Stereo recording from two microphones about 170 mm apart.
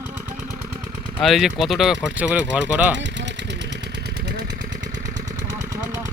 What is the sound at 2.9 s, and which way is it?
Speech, 90° right.